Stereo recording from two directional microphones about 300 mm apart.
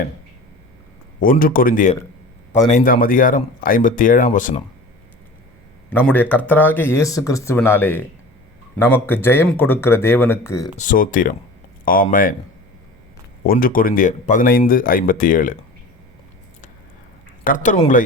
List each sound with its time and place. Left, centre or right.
1.2 s speech: left
5.9 s speech: centre
10.8 s speech: left
13.4 s speech: left
17.4 s speech: left